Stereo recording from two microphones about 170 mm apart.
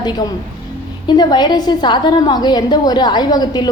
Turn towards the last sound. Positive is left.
turn(degrees=25)  # may be behind; listen again after turning